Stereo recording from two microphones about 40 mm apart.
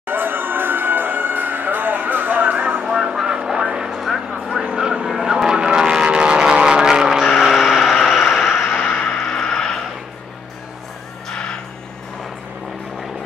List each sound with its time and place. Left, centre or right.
0.0 s music: right
2.5 s music: right
2.8 s vehicle: centre
7.9 s vehicle: centre
8.8 s a sound: centre